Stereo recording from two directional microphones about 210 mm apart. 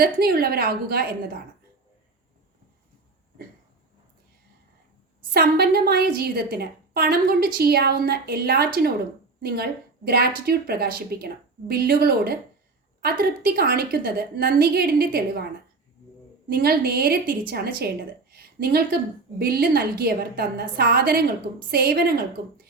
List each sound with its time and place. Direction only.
0.0 s a woman's voice: 45° right (ahead or behind)
5.3 s a woman's voice: 50° right (ahead or behind)
16.5 s a woman's voice: 45° right (ahead or behind)